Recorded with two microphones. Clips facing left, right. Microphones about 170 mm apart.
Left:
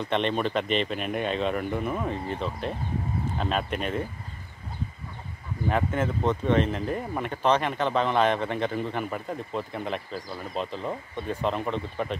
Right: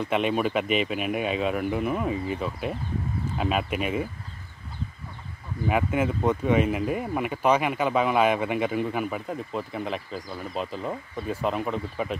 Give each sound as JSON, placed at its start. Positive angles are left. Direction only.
{"t": 0.0, "sound": "speech", "side_deg": -5}
{"t": 5.7, "sound": "speech", "side_deg": -10}